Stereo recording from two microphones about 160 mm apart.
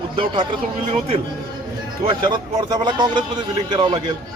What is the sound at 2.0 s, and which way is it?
A man's voice, 30° right (ahead or behind).